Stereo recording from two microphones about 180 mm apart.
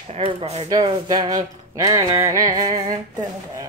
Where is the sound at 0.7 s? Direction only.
20° right (ahead or behind).